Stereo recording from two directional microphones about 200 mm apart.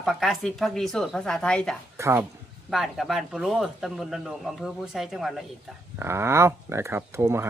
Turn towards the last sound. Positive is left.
turn(degrees=-15)  # may be behind; listen again after turning